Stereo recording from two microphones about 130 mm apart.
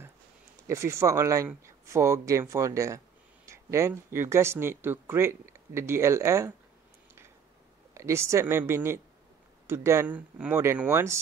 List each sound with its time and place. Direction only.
0.7 s speech: 20° right (ahead or behind)
7.9 s speech: 20° right (ahead or behind)